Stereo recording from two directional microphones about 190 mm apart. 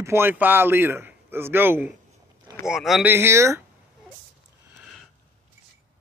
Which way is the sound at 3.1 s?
15° right (ahead or behind).